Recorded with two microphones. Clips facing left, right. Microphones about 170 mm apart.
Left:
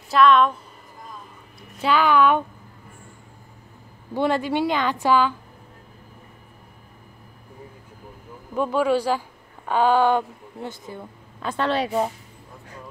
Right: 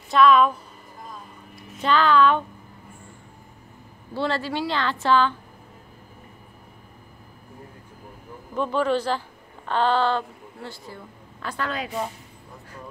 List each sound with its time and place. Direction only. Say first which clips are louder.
0.1 s a woman's voice: even; centre (ahead or behind)
1.7 s speech: left 1 dB; 5° left (ahead or behind)
4.1 s a woman's voice: left 4 dB; 15° left (ahead or behind)
8.5 s a woman's voice: left 2 dB; 10° left (ahead or behind); by 12.1 s 30° left (ahead or behind)